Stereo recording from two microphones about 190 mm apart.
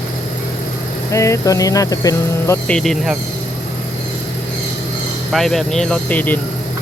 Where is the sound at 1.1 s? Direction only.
15° left (ahead or behind).